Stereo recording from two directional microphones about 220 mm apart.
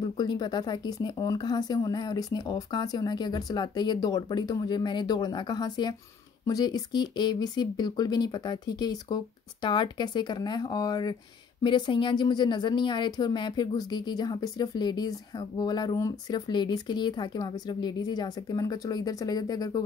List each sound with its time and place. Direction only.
0.0 s a woman's voice: 20° left (ahead or behind)